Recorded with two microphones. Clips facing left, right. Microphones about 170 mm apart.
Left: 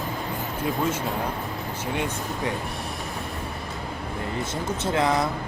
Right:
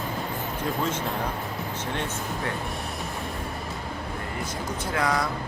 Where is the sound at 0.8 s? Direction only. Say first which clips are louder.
Left 2 dB; 10° left (ahead or behind).